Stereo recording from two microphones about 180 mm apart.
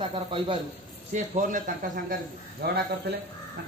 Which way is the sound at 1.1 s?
45° right (ahead or behind).